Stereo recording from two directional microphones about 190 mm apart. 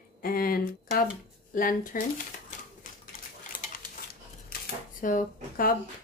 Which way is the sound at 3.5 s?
45° left (ahead or behind).